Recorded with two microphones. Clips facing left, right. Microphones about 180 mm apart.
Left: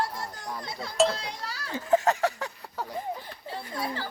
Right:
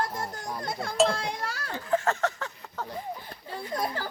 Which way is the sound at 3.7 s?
45° right (ahead or behind).